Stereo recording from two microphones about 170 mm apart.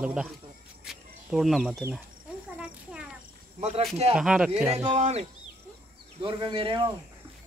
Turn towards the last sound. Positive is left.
turn(degrees=-30)  # may be behind; listen again after turning